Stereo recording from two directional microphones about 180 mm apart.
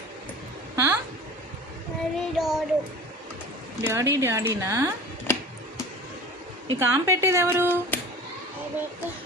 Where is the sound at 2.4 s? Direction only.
Centre (ahead or behind).